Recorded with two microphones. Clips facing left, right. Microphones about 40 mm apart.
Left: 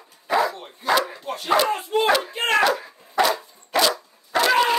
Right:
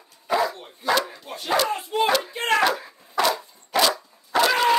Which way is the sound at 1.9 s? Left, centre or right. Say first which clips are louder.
Left 1 dB; left.